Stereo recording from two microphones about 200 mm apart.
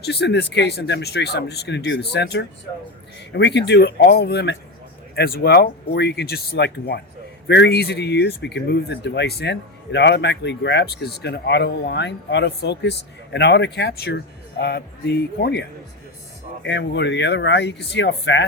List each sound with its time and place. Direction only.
0.0 s speech: 55° left (ahead or behind)
16.6 s speech: 60° left (ahead or behind)